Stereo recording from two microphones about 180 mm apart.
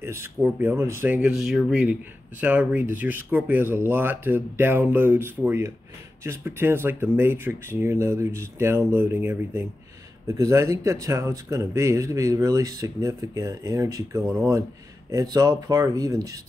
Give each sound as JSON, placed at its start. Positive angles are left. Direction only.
{"t": 0.0, "sound": "speech", "side_deg": -15}